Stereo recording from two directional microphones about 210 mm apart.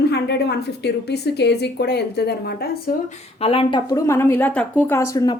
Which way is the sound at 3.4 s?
25° left (ahead or behind).